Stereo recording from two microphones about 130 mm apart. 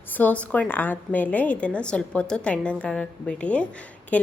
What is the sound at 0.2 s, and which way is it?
A woman's voice, 10° left (ahead or behind).